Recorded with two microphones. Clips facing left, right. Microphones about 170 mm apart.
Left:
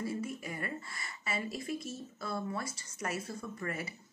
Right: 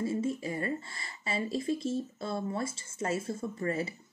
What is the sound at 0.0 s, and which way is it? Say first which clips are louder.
A woman's voice: right 6 dB; 25° right (ahead or behind).